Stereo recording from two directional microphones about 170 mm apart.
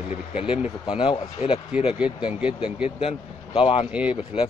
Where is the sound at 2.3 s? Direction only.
5° right (ahead or behind).